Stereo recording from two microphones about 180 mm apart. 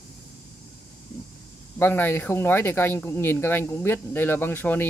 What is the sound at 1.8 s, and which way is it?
Speech, 10° left (ahead or behind).